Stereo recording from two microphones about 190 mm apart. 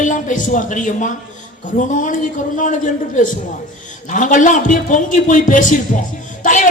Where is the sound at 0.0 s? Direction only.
40° left (ahead or behind).